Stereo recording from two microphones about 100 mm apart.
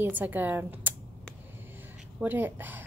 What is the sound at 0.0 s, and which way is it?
Speech, 20° right (ahead or behind).